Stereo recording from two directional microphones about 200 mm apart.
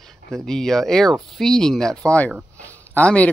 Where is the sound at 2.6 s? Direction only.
10° left (ahead or behind).